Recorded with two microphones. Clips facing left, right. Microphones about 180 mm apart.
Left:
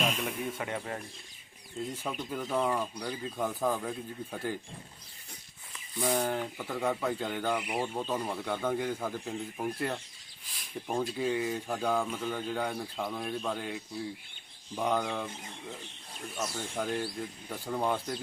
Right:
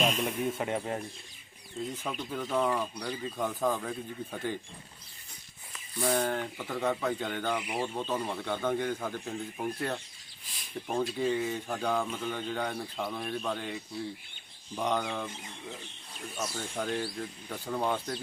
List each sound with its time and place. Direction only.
0.0 s a sound: centre (ahead or behind)
0.6 s speech: 20° right (ahead or behind)
2.0 s speech: 5° left (ahead or behind)
6.0 s speech: 5° left (ahead or behind)
16.6 s speech: 5° left (ahead or behind)